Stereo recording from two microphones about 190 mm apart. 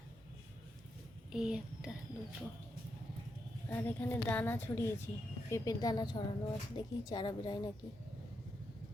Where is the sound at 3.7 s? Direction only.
10° left (ahead or behind); by 7.7 s 25° left (ahead or behind).